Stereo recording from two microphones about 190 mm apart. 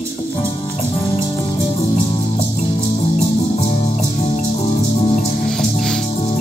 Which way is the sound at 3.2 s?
35° left (ahead or behind).